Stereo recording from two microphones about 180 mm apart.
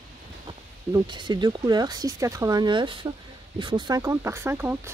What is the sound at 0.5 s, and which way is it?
Speech, 25° right (ahead or behind).